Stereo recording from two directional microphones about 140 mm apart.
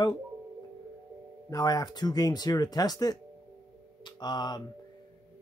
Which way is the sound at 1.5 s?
25° left (ahead or behind).